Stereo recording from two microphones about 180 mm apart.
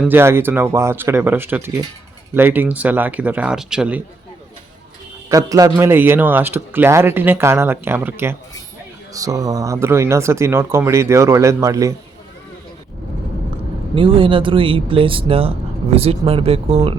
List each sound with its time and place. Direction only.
0.0 s a man's voice: 10° right (ahead or behind)
5.3 s a man's voice: 20° right (ahead or behind)
13.9 s speech: 30° right (ahead or behind)